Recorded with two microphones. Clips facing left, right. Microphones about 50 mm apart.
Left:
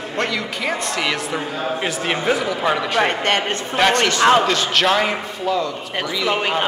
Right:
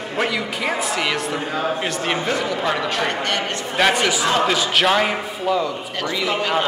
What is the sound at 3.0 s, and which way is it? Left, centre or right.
Speech, left.